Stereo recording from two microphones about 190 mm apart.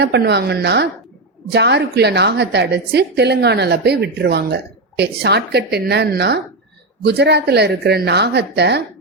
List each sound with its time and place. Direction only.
0.0 s a woman's voice: 60° right (ahead or behind)